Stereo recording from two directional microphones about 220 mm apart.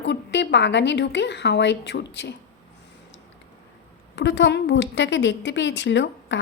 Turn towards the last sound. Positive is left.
turn(degrees=55)  # may be behind; listen again after turning